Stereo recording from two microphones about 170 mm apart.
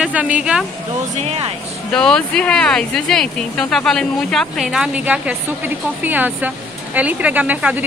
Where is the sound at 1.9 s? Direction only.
5° left (ahead or behind).